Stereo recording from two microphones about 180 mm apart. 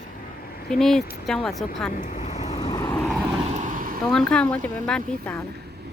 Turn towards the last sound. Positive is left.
turn(degrees=5)  # may be behind; listen again after turning